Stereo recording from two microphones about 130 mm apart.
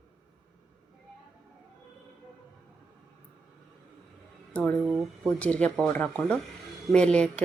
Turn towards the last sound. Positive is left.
turn(degrees=10)  # may be behind; listen again after turning